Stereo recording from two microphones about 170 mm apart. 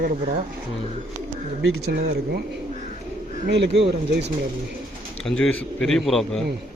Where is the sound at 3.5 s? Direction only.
90° right; by 4.3 s 75° right (ahead or behind).